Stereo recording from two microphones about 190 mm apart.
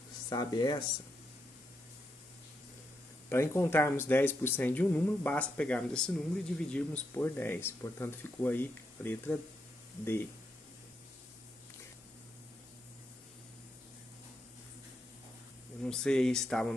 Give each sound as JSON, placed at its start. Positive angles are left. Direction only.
{"t": 0.3, "sound": "speech", "side_deg": 20}
{"t": 3.3, "sound": "speech", "side_deg": 15}
{"t": 15.8, "sound": "speech", "side_deg": 5}